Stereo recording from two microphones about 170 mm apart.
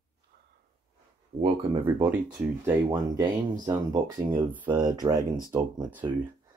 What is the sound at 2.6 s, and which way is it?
Speech, 20° right (ahead or behind).